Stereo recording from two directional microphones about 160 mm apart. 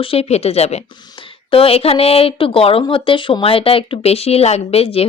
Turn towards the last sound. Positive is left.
turn(degrees=40)  # may be behind; listen again after turning